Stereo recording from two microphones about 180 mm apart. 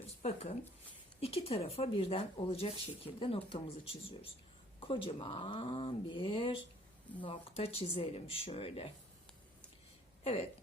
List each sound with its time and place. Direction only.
0.2 s speech: 35° left (ahead or behind)
10.2 s speech: 35° left (ahead or behind)